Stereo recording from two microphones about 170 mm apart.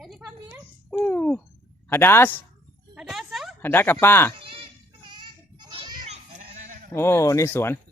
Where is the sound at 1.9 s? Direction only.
15° left (ahead or behind).